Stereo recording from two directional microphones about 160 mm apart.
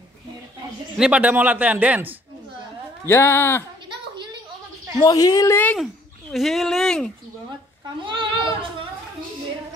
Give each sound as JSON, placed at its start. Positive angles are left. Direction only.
{"t": 0.9, "sound": "a man's voice", "side_deg": -5}
{"t": 3.1, "sound": "speech", "side_deg": 15}
{"t": 5.0, "sound": "a woman's voice", "side_deg": 25}
{"t": 6.3, "sound": "speech", "side_deg": 0}
{"t": 8.0, "sound": "a sound", "side_deg": -30}